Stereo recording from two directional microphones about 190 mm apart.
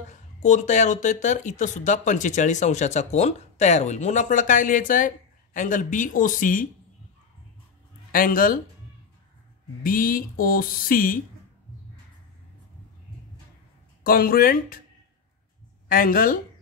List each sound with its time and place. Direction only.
0.1 s speech: 40° left (ahead or behind)
8.1 s speech: 45° left (ahead or behind)
9.8 s speech: 50° left (ahead or behind)
14.0 s speech: 50° left (ahead or behind)
15.9 s speech: 45° left (ahead or behind)